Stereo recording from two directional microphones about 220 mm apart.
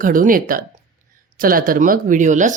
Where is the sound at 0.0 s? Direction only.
40° right (ahead or behind).